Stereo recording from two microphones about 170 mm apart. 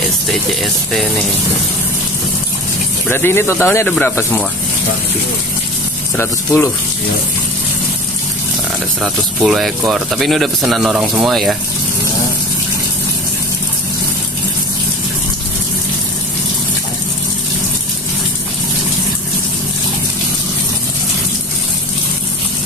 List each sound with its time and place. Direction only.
0.3 s speech: centre (ahead or behind)
3.1 s speech: 15° left (ahead or behind)
6.1 s speech: 15° left (ahead or behind)
9.0 s speech: centre (ahead or behind)